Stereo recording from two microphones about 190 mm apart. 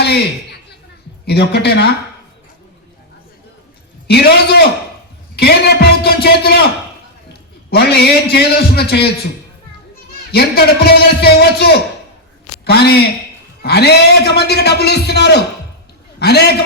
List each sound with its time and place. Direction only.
1.3 s a man's voice: 60° left (ahead or behind)
4.0 s a man's voice: 60° left (ahead or behind)
7.7 s a man's voice: 60° left (ahead or behind)
10.3 s a man's voice: 55° left (ahead or behind)